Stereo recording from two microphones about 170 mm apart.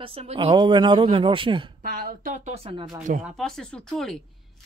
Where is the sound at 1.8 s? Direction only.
55° right (ahead or behind).